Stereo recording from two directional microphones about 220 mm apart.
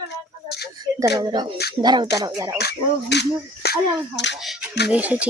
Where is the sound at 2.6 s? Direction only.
50° left (ahead or behind).